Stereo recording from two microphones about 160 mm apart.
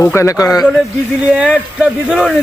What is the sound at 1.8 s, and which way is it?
Speech, 5° right (ahead or behind).